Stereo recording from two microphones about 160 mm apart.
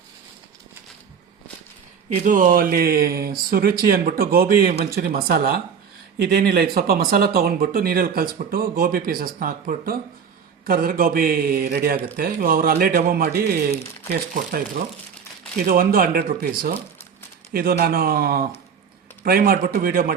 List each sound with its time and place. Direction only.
2.2 s speech: 55° right (ahead or behind)
6.2 s speech: 85° right; by 14.6 s 65° right (ahead or behind)
15.6 s speech: 65° right (ahead or behind)